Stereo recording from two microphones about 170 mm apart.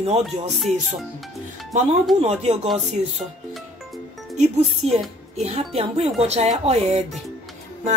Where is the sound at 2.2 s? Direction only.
40° right (ahead or behind).